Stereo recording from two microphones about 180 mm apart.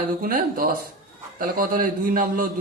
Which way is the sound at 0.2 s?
50° right (ahead or behind).